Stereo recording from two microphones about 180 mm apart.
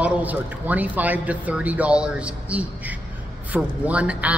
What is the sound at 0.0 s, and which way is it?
Speech, 10° right (ahead or behind).